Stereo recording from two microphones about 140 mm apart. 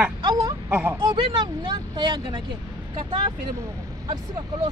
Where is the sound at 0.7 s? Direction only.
15° right (ahead or behind).